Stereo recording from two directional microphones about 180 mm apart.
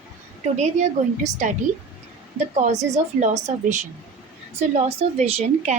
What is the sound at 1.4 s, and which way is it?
A woman's voice, 45° right (ahead or behind).